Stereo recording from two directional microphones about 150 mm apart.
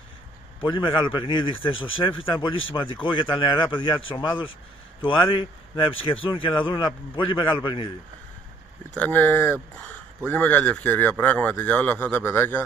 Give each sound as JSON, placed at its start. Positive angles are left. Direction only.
{"t": 0.6, "sound": "speech", "side_deg": 30}
{"t": 8.9, "sound": "speech", "side_deg": 10}